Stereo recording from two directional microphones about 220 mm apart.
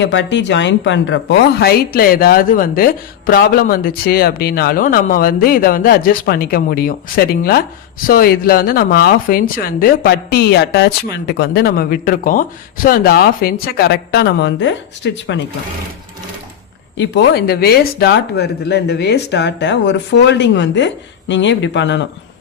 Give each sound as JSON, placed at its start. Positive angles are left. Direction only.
{"t": 0.0, "sound": "a woman's voice", "side_deg": 55}
{"t": 17.0, "sound": "a woman's voice", "side_deg": 50}